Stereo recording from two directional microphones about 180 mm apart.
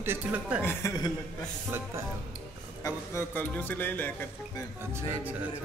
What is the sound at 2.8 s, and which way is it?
Speech, 15° left (ahead or behind).